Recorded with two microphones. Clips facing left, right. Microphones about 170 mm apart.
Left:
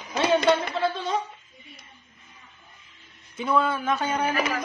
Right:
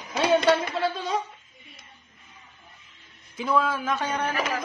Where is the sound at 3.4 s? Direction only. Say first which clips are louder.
Left 1 dB; centre (ahead or behind).